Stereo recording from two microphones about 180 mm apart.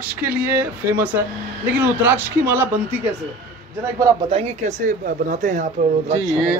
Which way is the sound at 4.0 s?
20° right (ahead or behind).